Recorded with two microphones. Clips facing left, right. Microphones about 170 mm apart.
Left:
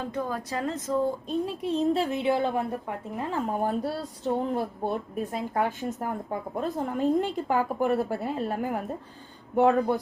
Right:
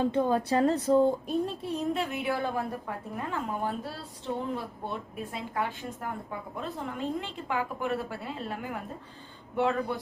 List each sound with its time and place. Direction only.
0.0 s speech: 25° right (ahead or behind)
1.6 s a woman's voice: 30° left (ahead or behind); by 10.0 s 45° left (ahead or behind)